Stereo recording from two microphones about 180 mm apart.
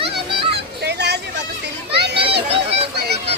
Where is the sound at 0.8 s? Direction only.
70° right (ahead or behind).